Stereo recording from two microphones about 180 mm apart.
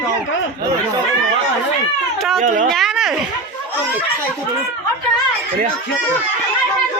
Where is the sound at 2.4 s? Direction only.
45° right (ahead or behind).